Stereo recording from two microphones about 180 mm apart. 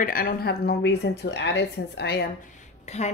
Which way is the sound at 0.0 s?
55° left (ahead or behind).